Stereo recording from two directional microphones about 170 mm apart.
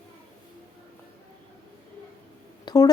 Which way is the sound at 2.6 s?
20° left (ahead or behind).